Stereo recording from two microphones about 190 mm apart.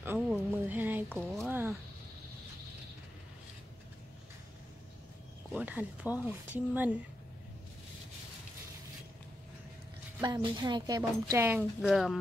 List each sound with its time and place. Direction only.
0.0 s speech: 10° right (ahead or behind)
5.5 s speech: 10° right (ahead or behind)
10.2 s a woman's voice: 25° right (ahead or behind)
11.8 s speech: centre (ahead or behind)